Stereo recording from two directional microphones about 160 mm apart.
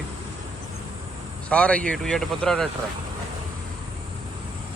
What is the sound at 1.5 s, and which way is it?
A man's voice, 5° left (ahead or behind).